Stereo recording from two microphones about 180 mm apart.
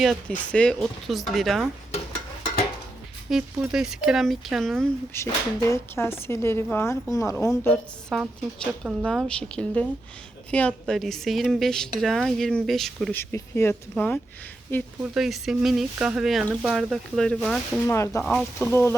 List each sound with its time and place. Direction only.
0.0 s a woman's voice: 5° left (ahead or behind)
3.2 s a woman's voice: 5° right (ahead or behind)
5.1 s a woman's voice: 15° left (ahead or behind)
8.1 s a woman's voice: centre (ahead or behind)
15.0 s a woman's voice: centre (ahead or behind)
17.9 s a woman's voice: 15° left (ahead or behind)
18.2 s a woman's voice: centre (ahead or behind)
18.7 s a woman's voice: 15° left (ahead or behind)